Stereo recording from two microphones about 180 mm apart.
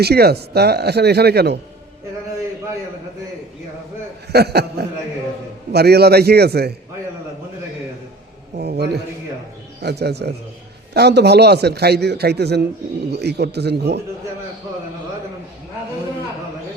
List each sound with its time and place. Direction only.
0.0 s a man's voice: 60° right (ahead or behind)
4.3 s a man's voice: 65° right (ahead or behind)
8.5 s a man's voice: 65° right (ahead or behind)